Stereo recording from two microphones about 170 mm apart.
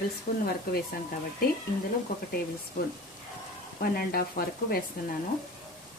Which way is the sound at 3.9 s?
60° left (ahead or behind).